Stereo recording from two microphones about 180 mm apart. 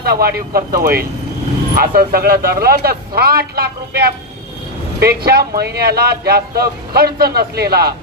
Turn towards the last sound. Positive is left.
turn(degrees=-60)  # may be behind; listen again after turning